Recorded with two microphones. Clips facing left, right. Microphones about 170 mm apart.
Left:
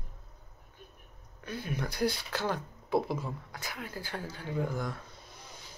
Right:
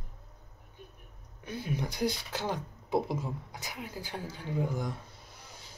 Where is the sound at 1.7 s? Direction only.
20° right (ahead or behind).